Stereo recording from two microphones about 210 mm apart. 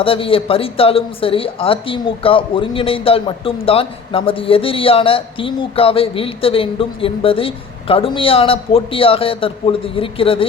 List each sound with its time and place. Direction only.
0.0 s speech: 25° left (ahead or behind)